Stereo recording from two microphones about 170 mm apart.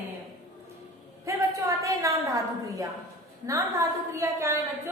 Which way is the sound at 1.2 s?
20° right (ahead or behind).